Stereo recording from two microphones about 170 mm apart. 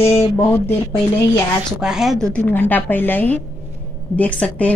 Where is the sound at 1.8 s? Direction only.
5° right (ahead or behind).